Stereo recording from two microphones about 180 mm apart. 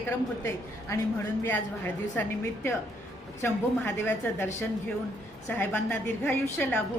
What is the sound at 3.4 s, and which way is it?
A woman's voice, 10° left (ahead or behind).